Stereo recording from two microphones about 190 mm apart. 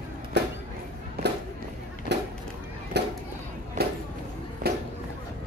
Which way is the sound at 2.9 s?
60° right (ahead or behind).